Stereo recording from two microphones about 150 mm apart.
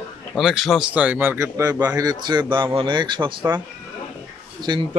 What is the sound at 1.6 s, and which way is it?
Speech, 25° right (ahead or behind).